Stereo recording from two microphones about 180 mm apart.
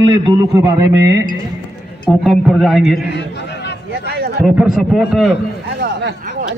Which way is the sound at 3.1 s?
70° left (ahead or behind).